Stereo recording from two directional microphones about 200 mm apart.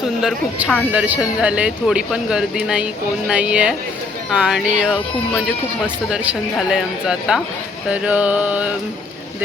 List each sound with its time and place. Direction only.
0.2 s speech: centre (ahead or behind)
6.1 s speech: 5° right (ahead or behind)
7.9 s a sound: 5° right (ahead or behind)